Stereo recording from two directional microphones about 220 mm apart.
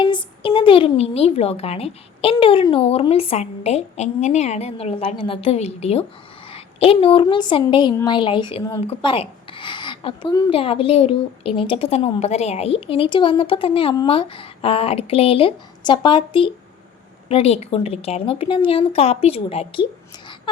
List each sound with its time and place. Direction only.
0.0 s a woman's voice: 20° left (ahead or behind)